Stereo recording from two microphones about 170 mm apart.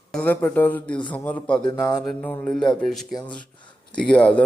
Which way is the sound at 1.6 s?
25° left (ahead or behind).